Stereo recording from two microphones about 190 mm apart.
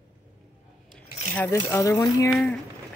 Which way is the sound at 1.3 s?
10° left (ahead or behind).